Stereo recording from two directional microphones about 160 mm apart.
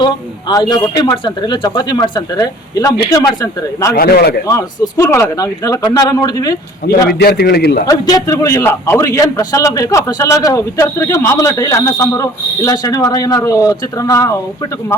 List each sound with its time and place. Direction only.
0.0 s a man's voice: 25° left (ahead or behind)
3.9 s a man's voice: 70° left (ahead or behind)
4.4 s a man's voice: 20° left (ahead or behind)
6.8 s a man's voice: 80° left
7.9 s a man's voice: 20° left (ahead or behind)